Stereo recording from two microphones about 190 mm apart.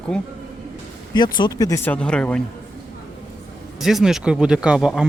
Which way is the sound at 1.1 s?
20° left (ahead or behind).